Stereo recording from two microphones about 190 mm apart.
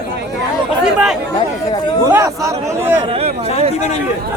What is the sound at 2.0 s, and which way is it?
Speech, 15° right (ahead or behind).